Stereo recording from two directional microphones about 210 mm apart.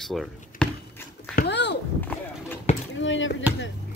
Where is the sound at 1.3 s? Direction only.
55° left (ahead or behind).